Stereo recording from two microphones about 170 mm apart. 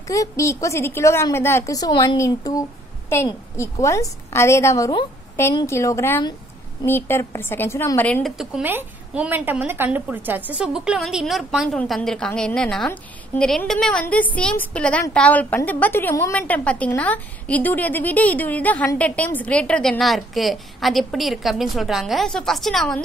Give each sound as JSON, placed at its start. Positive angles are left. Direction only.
{"t": 0.1, "sound": "a woman's voice", "side_deg": 20}
{"t": 8.4, "sound": "a woman's voice", "side_deg": -5}